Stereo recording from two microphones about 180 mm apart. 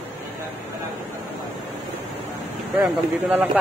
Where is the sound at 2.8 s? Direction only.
15° right (ahead or behind).